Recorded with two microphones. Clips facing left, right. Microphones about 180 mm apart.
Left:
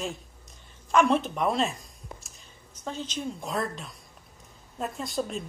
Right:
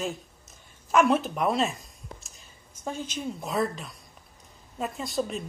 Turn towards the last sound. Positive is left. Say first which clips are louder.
# right 1 dB
turn(degrees=0)  # may be behind; listen again after turning